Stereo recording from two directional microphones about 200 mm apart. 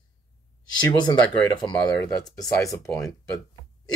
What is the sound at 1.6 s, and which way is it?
Speech, 20° left (ahead or behind).